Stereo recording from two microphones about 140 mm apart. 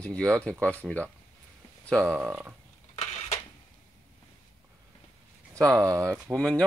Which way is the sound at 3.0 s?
55° left (ahead or behind).